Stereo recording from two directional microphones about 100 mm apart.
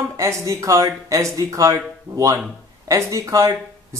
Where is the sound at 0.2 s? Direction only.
30° right (ahead or behind).